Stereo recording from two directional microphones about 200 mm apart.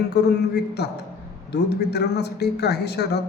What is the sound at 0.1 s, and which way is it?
Speech, 55° left (ahead or behind).